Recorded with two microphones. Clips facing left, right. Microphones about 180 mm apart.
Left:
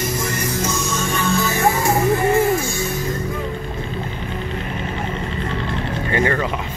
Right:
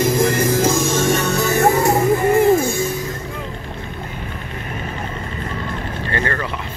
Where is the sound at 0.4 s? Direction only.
90° right; by 1.6 s 70° right (ahead or behind).